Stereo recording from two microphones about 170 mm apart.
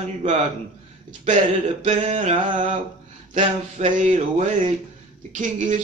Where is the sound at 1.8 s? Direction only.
45° right (ahead or behind).